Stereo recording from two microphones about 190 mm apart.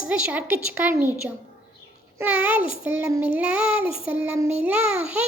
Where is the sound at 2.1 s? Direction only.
10° right (ahead or behind).